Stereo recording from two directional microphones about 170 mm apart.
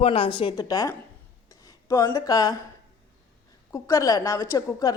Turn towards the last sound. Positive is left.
turn(degrees=20)  # may be behind; listen again after turning